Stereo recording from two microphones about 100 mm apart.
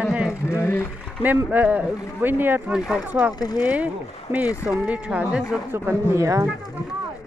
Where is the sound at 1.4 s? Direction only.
15° right (ahead or behind).